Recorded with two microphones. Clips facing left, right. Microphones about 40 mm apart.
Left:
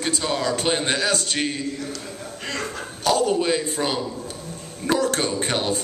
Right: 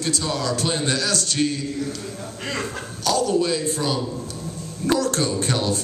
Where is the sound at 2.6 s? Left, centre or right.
Left.